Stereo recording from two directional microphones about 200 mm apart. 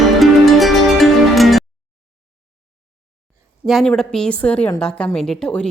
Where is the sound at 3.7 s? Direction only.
Centre (ahead or behind).